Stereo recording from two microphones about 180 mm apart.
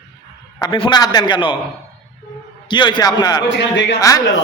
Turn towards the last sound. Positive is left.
turn(degrees=20)  # may be behind; listen again after turning